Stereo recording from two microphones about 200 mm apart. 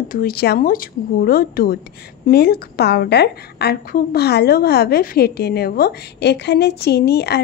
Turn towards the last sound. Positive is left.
turn(degrees=55)  # may be behind; listen again after turning